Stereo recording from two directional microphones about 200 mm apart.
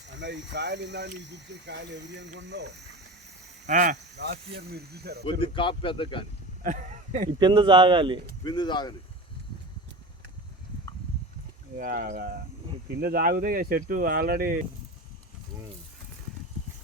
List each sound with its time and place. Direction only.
0.1 s speech: 60° right (ahead or behind)
3.7 s speech: 40° right (ahead or behind)
4.1 s speech: 55° right (ahead or behind)
5.2 s a man's voice: 25° left (ahead or behind)
6.6 s a sound: 40° right (ahead or behind)
7.3 s speech: 25° right (ahead or behind)
8.4 s a man's voice: 20° left (ahead or behind)
11.8 s speech: 45° right (ahead or behind)